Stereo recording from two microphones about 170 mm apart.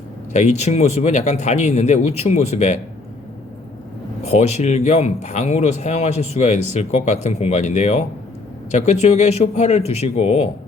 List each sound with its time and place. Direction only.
0.3 s speech: 40° left (ahead or behind)
4.3 s speech: 40° left (ahead or behind)